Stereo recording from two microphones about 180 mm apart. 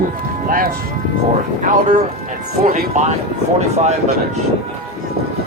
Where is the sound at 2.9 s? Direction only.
40° right (ahead or behind).